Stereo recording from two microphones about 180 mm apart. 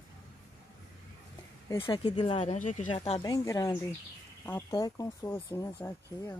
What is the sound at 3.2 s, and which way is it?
Speech, 20° left (ahead or behind).